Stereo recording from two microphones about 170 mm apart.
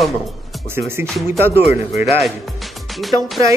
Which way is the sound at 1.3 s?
15° right (ahead or behind).